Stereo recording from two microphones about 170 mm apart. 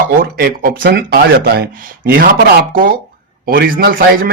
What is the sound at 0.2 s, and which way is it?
A man's voice, 65° right (ahead or behind).